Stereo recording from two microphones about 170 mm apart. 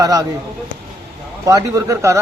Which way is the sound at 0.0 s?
20° right (ahead or behind).